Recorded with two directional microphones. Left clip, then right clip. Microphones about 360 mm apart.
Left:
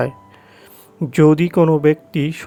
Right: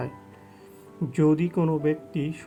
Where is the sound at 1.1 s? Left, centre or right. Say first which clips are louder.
Left 10 dB; left.